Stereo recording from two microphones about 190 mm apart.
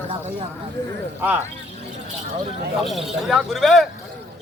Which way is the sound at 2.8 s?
Centre (ahead or behind).